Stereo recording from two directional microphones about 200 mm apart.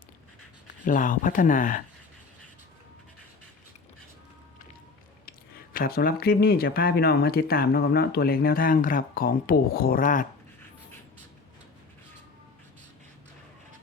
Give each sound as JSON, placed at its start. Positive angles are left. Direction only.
{"t": 0.9, "sound": "speech", "side_deg": 40}
{"t": 5.7, "sound": "speech", "side_deg": 45}